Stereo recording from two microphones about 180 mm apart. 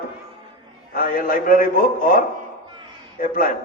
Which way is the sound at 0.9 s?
50° left (ahead or behind).